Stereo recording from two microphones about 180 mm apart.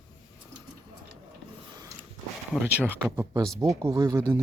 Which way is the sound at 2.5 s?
10° right (ahead or behind).